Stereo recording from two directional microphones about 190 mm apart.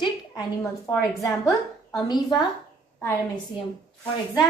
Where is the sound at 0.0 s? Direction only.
20° left (ahead or behind).